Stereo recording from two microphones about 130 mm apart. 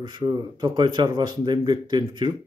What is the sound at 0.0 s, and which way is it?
Speech, 30° right (ahead or behind).